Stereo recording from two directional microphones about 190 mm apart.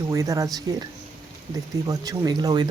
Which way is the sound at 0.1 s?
15° right (ahead or behind).